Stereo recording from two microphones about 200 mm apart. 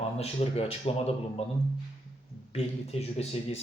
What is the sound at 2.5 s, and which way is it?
Speech, 30° left (ahead or behind).